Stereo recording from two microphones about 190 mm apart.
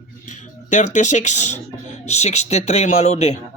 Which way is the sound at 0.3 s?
40° left (ahead or behind).